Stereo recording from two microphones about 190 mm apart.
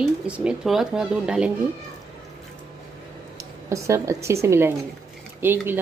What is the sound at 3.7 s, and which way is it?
A woman's voice, 15° right (ahead or behind).